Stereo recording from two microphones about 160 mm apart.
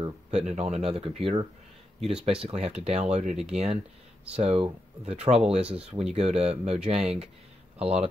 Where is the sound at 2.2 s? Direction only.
40° right (ahead or behind).